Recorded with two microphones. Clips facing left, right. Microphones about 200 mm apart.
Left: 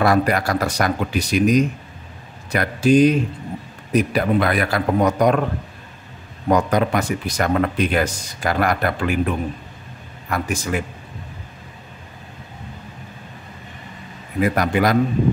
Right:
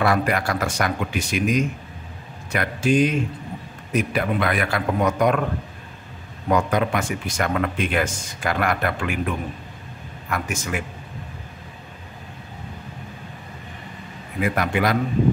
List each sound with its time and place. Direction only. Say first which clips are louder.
0.0 s speech: left 3 dB; 40° left (ahead or behind)
6.5 s speech: left 3 dB; 40° left (ahead or behind)
10.3 s speech: left 4 dB; 35° left (ahead or behind)
14.4 s speech: left 4 dB; 40° left (ahead or behind)